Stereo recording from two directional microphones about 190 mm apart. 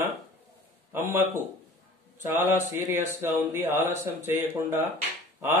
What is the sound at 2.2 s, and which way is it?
Speech, 10° right (ahead or behind).